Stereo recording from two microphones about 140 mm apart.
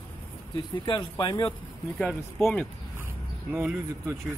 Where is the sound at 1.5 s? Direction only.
5° left (ahead or behind).